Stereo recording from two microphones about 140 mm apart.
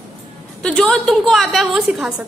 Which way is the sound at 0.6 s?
5° left (ahead or behind).